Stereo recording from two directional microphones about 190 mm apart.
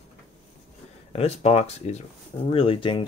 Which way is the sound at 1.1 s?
30° left (ahead or behind).